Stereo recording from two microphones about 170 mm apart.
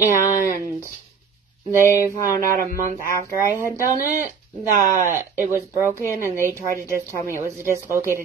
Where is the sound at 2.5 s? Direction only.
50° right (ahead or behind).